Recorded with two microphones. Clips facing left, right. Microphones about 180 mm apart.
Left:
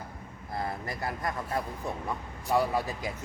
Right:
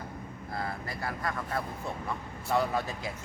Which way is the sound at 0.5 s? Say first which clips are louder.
Left 2 dB; 25° left (ahead or behind).